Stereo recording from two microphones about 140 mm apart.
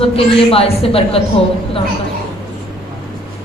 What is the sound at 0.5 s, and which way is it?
Speech, 45° left (ahead or behind).